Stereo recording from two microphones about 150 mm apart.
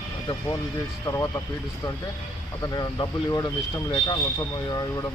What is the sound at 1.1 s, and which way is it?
Speech, 20° left (ahead or behind).